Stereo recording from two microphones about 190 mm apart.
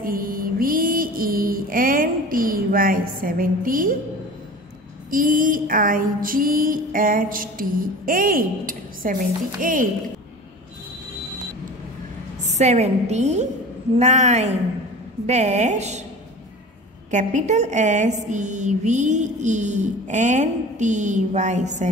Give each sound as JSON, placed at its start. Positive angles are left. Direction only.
{"t": 0.0, "sound": "mantra", "side_deg": -50}
{"t": 5.1, "sound": "mantra", "side_deg": -50}
{"t": 12.4, "sound": "a woman's voice", "side_deg": -40}
{"t": 17.1, "sound": "a woman's voice", "side_deg": -40}